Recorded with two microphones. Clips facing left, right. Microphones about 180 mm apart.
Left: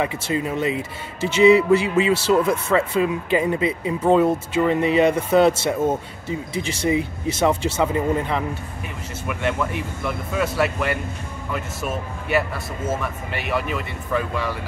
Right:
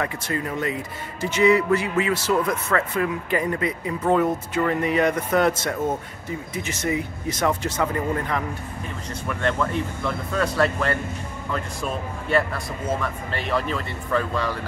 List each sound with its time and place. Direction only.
0.0 s a man's voice: 20° left (ahead or behind); by 14.7 s centre (ahead or behind)